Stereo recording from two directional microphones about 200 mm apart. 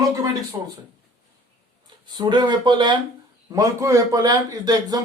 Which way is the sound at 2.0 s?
20° right (ahead or behind).